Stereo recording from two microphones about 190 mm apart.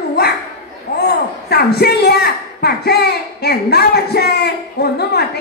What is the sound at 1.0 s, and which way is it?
A woman's voice, 60° left (ahead or behind).